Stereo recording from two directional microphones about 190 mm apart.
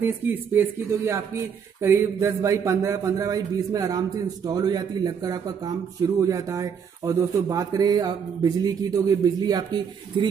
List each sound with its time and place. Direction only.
0.0 s a man's voice: 10° right (ahead or behind)